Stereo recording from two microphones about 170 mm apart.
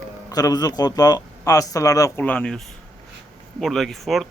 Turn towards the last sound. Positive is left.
turn(degrees=0)  # may be behind; listen again after turning